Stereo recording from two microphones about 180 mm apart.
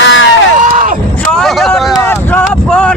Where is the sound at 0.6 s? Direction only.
45° right (ahead or behind).